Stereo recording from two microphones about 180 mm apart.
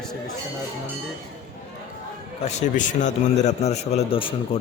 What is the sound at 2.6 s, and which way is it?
A man's voice, 40° left (ahead or behind).